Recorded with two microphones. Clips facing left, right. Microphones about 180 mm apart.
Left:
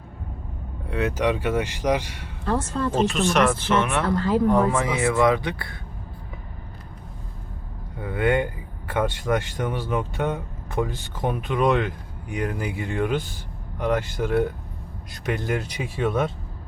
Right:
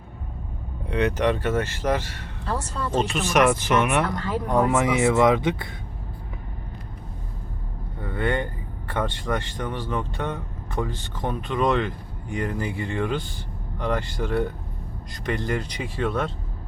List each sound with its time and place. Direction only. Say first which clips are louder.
0.9 s speech: right 1 dB; 5° left (ahead or behind)
2.9 s speech: even; centre (ahead or behind); by 4.0 s 15° right (ahead or behind)
4.1 s speech: left 6 dB; 35° left (ahead or behind)
4.5 s speech: right 1 dB; 20° right (ahead or behind)
8.0 s speech: left 4 dB; 5° left (ahead or behind)